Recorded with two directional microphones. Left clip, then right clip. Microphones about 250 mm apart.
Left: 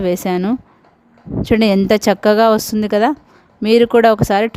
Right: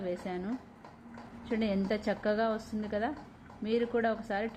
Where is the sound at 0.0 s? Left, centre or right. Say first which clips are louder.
Left 19 dB; left.